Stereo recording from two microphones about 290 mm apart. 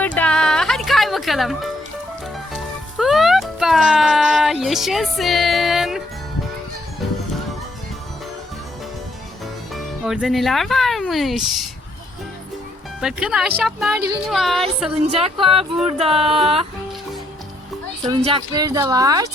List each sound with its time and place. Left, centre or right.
0.0 s music: centre
3.0 s speech: centre
9.7 s speech: centre
13.0 s speech: centre
15.0 s speech: right
18.0 s speech: centre